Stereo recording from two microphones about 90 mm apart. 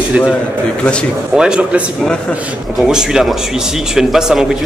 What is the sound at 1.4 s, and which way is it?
Mantra, 10° right (ahead or behind).